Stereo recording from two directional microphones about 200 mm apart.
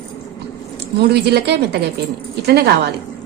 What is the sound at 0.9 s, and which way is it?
A woman's voice, 55° right (ahead or behind).